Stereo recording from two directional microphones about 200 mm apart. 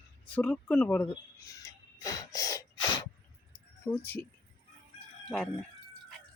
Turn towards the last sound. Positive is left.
turn(degrees=5)  # may be behind; listen again after turning